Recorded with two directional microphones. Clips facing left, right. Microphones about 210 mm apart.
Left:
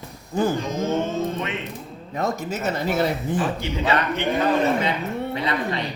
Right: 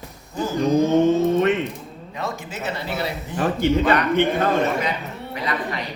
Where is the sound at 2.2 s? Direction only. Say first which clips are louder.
Left 4 dB; 40° left (ahead or behind).